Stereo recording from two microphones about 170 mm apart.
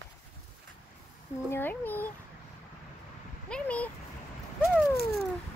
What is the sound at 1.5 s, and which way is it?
Speech, 10° left (ahead or behind).